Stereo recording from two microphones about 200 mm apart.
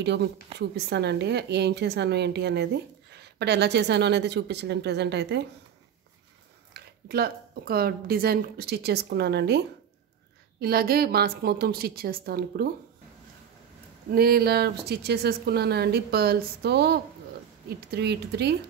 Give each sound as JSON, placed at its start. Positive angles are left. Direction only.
{"t": 0.0, "sound": "a woman's voice", "side_deg": -60}
{"t": 6.7, "sound": "a woman's voice", "side_deg": -50}
{"t": 10.6, "sound": "a woman's voice", "side_deg": -50}
{"t": 14.1, "sound": "a woman's voice", "side_deg": -50}